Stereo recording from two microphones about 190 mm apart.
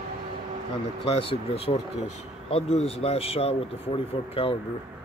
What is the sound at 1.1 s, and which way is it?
Speech, 30° left (ahead or behind).